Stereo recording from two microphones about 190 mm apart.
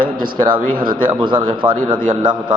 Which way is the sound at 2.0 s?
45° right (ahead or behind).